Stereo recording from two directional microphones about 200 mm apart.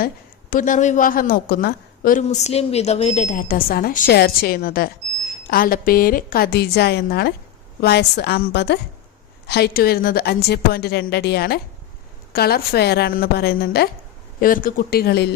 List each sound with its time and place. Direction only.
0.5 s a woman's voice: 40° left (ahead or behind)